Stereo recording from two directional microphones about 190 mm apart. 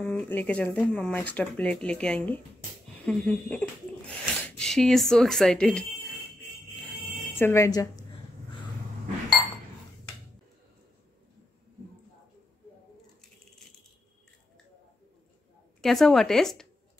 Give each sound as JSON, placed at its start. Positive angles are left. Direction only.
{"t": 0.0, "sound": "speech", "side_deg": 10}
{"t": 7.3, "sound": "speech", "side_deg": 15}
{"t": 15.8, "sound": "speech", "side_deg": 0}